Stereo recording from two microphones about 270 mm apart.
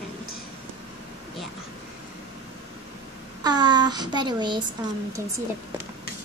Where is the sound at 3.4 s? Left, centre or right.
Centre.